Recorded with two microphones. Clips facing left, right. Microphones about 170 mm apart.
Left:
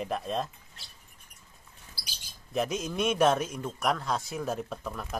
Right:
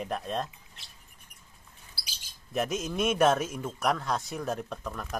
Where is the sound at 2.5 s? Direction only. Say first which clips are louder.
Even; centre (ahead or behind).